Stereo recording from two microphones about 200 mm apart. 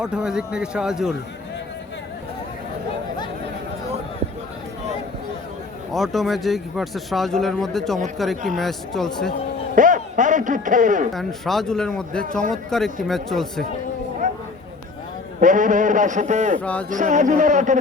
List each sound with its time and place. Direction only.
0.0 s speech: 5° right (ahead or behind)
5.9 s speech: centre (ahead or behind)
9.7 s speech: 40° right (ahead or behind)
11.1 s speech: centre (ahead or behind)
14.2 s a sound: 40° right (ahead or behind)
15.4 s a man's voice: 40° right (ahead or behind)
16.6 s speech: 5° left (ahead or behind)
16.9 s a man's voice: 40° right (ahead or behind)